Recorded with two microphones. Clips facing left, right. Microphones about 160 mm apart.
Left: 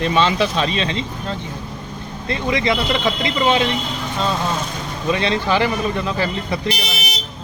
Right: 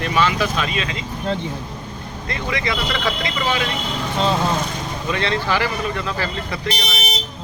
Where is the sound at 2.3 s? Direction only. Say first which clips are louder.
Left 5 dB; 20° left (ahead or behind).